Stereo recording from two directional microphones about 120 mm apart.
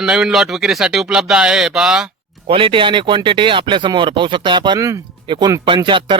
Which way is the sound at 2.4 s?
45° right (ahead or behind).